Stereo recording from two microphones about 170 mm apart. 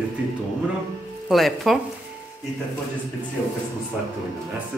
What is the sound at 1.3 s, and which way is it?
Speech, centre (ahead or behind).